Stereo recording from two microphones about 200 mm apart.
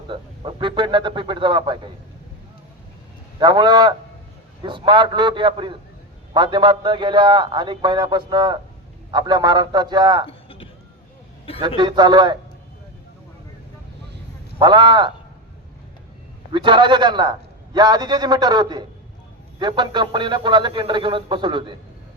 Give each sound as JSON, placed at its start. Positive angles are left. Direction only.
{"t": 0.1, "sound": "a man's voice", "side_deg": -25}
{"t": 3.3, "sound": "a man's voice", "side_deg": -20}
{"t": 10.2, "sound": "a sound", "side_deg": 25}
{"t": 11.8, "sound": "a man's voice", "side_deg": -25}
{"t": 14.6, "sound": "a man's voice", "side_deg": -25}
{"t": 16.5, "sound": "a man's voice", "side_deg": -25}